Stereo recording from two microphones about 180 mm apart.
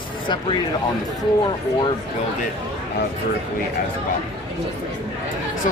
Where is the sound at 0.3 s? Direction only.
25° left (ahead or behind).